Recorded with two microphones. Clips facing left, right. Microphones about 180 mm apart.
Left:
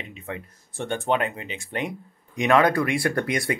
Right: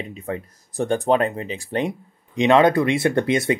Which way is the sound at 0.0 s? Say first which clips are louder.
Right 6 dB; 40° right (ahead or behind).